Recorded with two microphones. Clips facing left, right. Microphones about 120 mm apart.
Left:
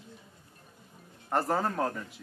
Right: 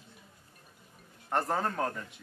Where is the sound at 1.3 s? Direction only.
Centre (ahead or behind).